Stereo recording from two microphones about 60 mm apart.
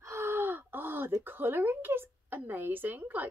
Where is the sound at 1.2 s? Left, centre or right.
Right.